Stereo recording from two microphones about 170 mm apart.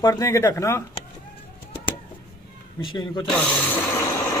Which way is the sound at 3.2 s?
5° left (ahead or behind).